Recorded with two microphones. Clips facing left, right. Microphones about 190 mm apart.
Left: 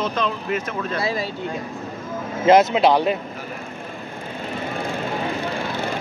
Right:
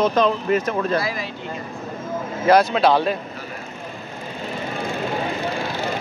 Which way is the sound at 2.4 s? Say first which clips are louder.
Left 1 dB; 20° left (ahead or behind).